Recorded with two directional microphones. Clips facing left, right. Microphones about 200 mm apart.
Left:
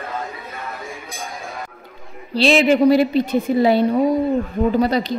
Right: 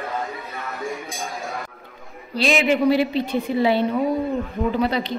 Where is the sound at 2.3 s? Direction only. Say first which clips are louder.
Left 5 dB; 30° left (ahead or behind).